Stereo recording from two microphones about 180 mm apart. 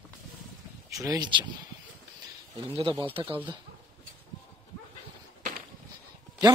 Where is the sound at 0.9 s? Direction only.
20° right (ahead or behind).